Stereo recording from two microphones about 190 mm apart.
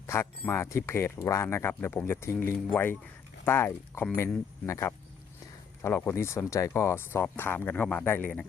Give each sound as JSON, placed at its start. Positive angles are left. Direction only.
{"t": 0.1, "sound": "speech", "side_deg": 15}